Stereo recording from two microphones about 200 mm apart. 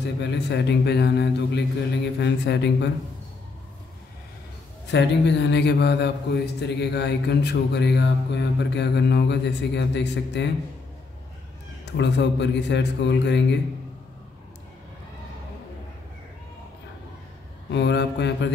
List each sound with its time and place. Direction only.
0.0 s a man's voice: 60° left (ahead or behind)
4.9 s a man's voice: 60° left (ahead or behind)
11.8 s a man's voice: 60° left (ahead or behind)
17.6 s a man's voice: 60° left (ahead or behind)